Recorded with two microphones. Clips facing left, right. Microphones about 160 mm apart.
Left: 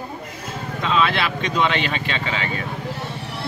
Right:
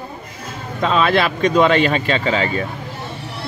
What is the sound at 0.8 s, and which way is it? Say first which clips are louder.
Speech: right 5 dB; 45° right (ahead or behind).